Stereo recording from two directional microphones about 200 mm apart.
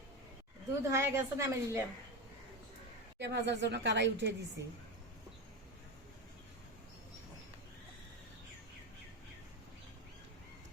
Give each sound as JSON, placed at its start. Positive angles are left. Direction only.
{"t": 0.9, "sound": "a woman's voice", "side_deg": -15}
{"t": 3.2, "sound": "speech", "side_deg": -60}